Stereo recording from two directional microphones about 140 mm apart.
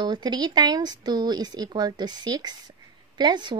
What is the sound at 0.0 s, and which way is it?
A woman's voice, 30° right (ahead or behind).